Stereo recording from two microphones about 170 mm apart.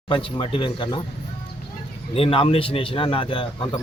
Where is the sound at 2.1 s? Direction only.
35° left (ahead or behind).